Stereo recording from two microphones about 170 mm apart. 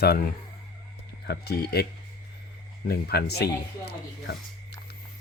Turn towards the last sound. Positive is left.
turn(degrees=70)  # may be behind; listen again after turning